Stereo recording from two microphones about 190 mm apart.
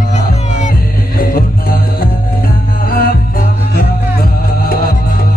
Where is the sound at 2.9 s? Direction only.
50° left (ahead or behind).